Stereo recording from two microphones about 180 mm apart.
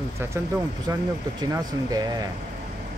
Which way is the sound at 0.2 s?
15° right (ahead or behind).